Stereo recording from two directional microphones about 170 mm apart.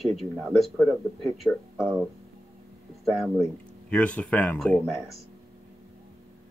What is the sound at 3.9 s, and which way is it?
Speech, 5° left (ahead or behind).